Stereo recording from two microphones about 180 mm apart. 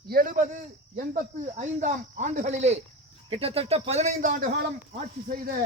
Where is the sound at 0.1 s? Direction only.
50° right (ahead or behind).